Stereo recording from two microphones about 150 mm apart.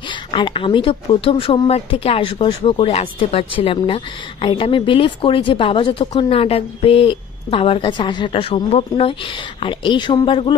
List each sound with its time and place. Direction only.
0.1 s a woman's voice: 30° left (ahead or behind)